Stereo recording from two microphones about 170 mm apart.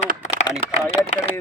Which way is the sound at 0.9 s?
35° left (ahead or behind).